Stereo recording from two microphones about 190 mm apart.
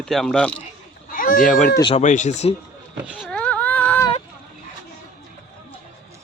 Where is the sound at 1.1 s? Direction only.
50° left (ahead or behind).